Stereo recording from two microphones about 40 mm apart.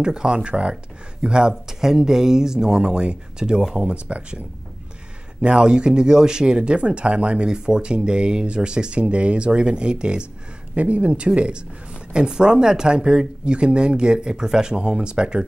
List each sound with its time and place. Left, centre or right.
0.0 s speech: centre
1.5 s speech: centre; by 4.4 s right
5.4 s speech: right
10.7 s speech: right